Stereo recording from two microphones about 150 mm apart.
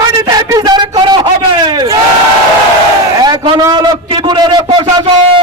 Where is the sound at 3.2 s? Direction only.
30° right (ahead or behind).